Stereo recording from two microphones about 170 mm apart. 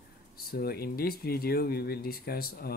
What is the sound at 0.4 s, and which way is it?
Speech, 65° left (ahead or behind).